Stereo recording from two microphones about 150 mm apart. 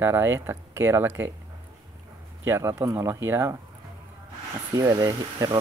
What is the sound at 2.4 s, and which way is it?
Speech, 15° right (ahead or behind).